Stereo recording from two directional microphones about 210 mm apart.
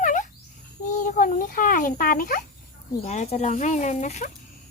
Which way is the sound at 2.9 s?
30° left (ahead or behind).